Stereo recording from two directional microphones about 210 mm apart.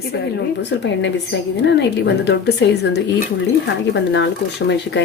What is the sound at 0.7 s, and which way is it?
Speech, 60° left (ahead or behind).